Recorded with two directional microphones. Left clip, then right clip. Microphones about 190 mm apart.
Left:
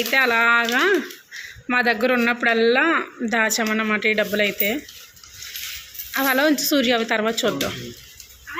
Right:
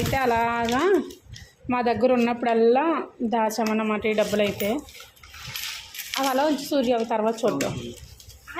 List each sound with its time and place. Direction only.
0.1 s speech: centre (ahead or behind)
6.3 s speech: 20° left (ahead or behind)